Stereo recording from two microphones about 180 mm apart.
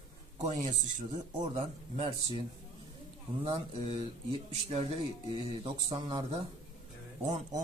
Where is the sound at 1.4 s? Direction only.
35° right (ahead or behind).